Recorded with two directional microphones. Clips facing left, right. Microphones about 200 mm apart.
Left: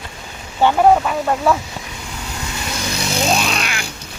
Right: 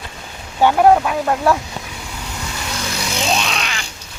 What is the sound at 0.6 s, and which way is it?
Speech, 5° right (ahead or behind).